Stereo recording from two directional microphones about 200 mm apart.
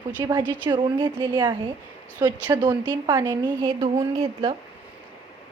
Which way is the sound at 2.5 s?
20° right (ahead or behind).